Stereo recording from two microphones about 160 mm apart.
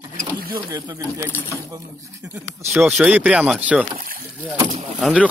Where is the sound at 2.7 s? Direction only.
Centre (ahead or behind).